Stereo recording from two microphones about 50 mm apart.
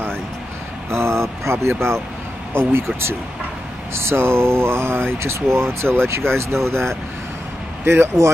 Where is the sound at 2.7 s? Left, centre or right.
Right.